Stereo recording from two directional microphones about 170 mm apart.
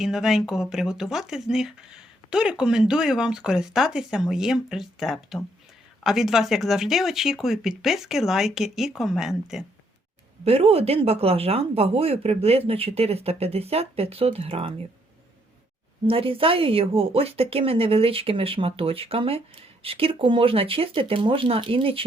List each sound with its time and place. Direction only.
0.0 s speech: centre (ahead or behind)
10.4 s speech: 35° right (ahead or behind)
16.0 s speech: 35° right (ahead or behind)